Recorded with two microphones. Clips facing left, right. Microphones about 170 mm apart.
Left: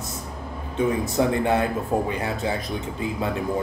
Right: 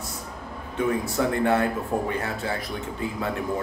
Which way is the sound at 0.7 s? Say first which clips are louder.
Left 2 dB; 20° left (ahead or behind).